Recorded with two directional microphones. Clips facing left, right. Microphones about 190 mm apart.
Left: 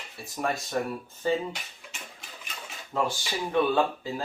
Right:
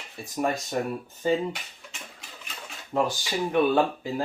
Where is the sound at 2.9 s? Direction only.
15° right (ahead or behind).